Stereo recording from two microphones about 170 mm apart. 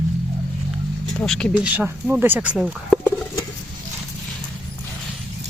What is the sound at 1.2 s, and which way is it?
Speech, 5° left (ahead or behind).